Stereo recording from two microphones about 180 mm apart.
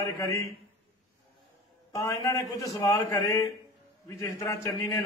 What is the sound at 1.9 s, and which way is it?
Speech, 15° left (ahead or behind).